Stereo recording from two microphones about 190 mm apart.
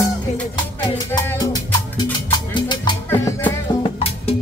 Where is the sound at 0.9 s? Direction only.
15° left (ahead or behind).